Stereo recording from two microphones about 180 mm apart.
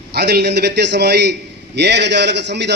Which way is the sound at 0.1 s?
65° right (ahead or behind).